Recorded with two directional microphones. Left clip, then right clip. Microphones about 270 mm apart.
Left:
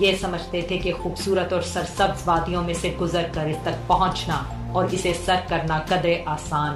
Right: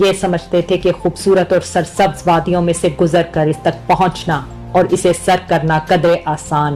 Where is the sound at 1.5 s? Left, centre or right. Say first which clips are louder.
Right 10 dB; right.